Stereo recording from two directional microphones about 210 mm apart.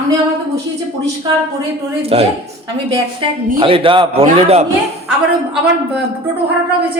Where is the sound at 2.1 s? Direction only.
25° right (ahead or behind).